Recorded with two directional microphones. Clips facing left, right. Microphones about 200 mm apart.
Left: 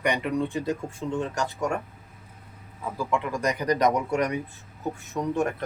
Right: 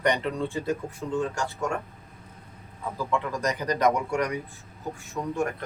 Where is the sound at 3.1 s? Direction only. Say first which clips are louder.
Left 1 dB; 15° left (ahead or behind).